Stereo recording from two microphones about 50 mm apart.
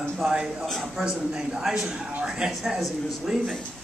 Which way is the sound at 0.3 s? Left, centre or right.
Centre.